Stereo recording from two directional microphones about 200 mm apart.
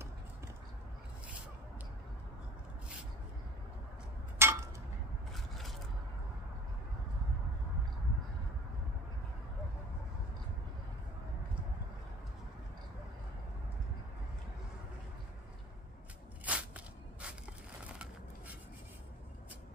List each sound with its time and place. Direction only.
4.4 s a sound: 10° right (ahead or behind)
5.3 s scrape: centre (ahead or behind)
16.4 s walk: 5° right (ahead or behind)